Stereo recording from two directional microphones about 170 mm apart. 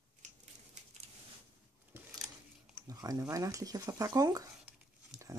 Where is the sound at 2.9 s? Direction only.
20° right (ahead or behind).